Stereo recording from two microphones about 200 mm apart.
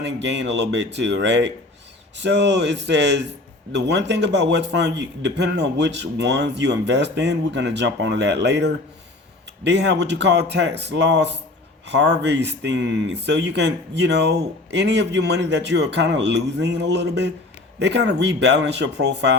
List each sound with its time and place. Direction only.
0.0 s speech: 60° right (ahead or behind)